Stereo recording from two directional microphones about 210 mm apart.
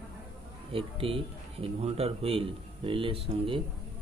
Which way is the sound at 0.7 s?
25° right (ahead or behind).